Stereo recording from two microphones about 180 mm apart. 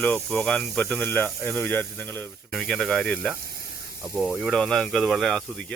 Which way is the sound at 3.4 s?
60° right (ahead or behind).